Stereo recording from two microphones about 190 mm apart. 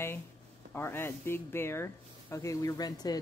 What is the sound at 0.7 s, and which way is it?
Speech, 10° left (ahead or behind).